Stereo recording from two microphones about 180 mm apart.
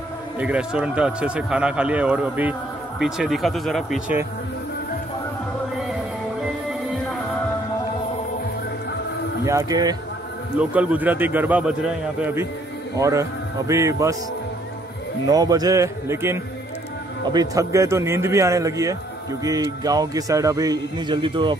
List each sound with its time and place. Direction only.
0.4 s speech: 5° right (ahead or behind)
9.4 s a man's voice: 20° right (ahead or behind)
10.6 s a man's voice: 10° right (ahead or behind)
15.2 s a man's voice: 20° right (ahead or behind)